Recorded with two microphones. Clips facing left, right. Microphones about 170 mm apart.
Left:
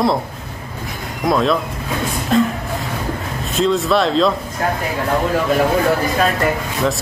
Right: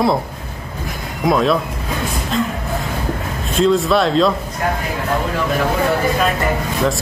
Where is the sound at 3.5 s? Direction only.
Centre (ahead or behind).